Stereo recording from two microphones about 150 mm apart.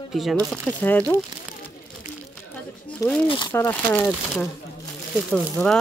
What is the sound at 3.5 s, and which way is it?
Speech, 15° left (ahead or behind).